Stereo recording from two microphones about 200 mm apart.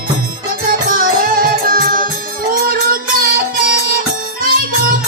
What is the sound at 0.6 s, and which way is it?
Music, 45° right (ahead or behind).